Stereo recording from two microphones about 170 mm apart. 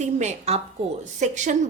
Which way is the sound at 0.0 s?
40° right (ahead or behind).